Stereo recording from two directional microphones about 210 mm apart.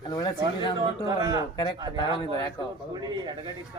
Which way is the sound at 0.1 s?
20° left (ahead or behind).